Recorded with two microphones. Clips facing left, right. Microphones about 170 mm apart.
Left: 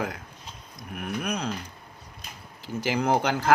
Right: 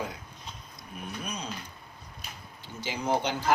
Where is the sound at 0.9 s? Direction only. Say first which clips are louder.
Left 7 dB; 75° left (ahead or behind).